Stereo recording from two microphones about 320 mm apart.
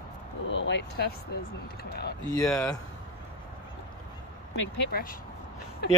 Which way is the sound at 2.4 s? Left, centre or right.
Centre.